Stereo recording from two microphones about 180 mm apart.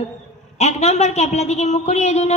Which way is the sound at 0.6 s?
35° left (ahead or behind).